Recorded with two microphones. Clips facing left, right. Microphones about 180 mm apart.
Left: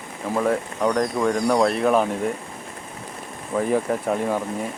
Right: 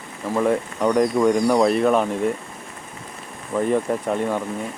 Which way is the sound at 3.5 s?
Centre (ahead or behind).